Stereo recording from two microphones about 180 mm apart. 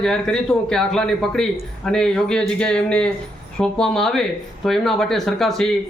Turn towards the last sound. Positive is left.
turn(degrees=0)  # may be behind; listen again after turning